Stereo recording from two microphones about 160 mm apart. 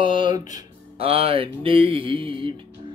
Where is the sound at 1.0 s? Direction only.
35° right (ahead or behind).